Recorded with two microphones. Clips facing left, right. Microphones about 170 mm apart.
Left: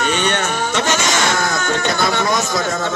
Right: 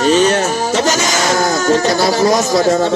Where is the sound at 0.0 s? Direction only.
35° right (ahead or behind).